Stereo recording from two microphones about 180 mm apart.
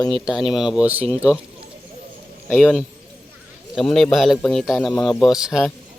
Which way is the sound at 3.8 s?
Centre (ahead or behind).